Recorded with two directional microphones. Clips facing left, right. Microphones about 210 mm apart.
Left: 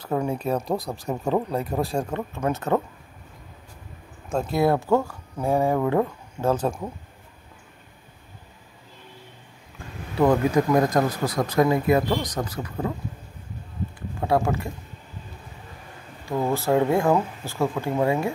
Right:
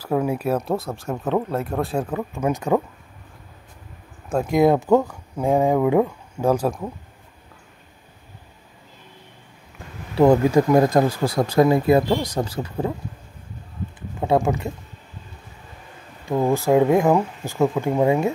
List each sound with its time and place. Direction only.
0.0 s speech: 5° right (ahead or behind)
4.3 s speech: 10° right (ahead or behind)
10.1 s speech: 30° right (ahead or behind)
14.2 s speech: 20° right (ahead or behind)
16.3 s speech: 15° right (ahead or behind)